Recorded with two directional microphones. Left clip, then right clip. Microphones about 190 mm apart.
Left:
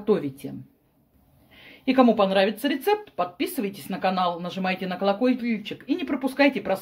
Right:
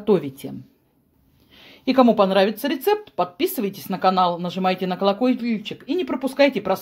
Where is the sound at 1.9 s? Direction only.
35° right (ahead or behind).